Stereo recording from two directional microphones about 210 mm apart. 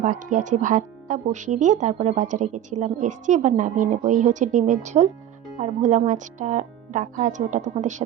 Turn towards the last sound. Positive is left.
turn(degrees=-35)  # may be behind; listen again after turning